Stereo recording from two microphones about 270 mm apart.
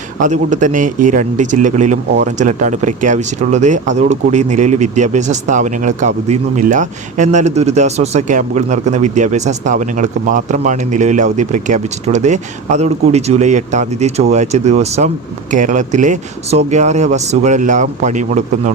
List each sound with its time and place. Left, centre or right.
0.2 s speech: right